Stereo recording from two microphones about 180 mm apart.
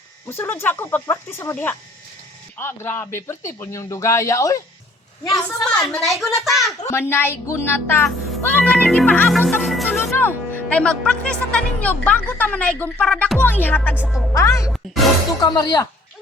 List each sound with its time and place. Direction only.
0.3 s speech: 10° left (ahead or behind)
5.3 s a child's voice: 5° left (ahead or behind)
7.1 s speech: 15° left (ahead or behind)
10.2 s speech: 10° left (ahead or behind)
13.9 s speech: 5° right (ahead or behind)
14.3 s speech: 15° left (ahead or behind)